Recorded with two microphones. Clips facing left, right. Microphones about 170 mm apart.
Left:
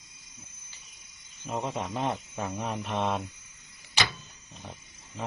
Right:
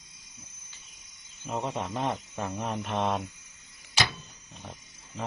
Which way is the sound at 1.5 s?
Centre (ahead or behind).